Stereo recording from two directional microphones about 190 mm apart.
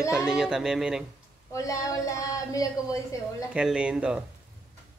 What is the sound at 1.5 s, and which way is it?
Speech, 15° left (ahead or behind).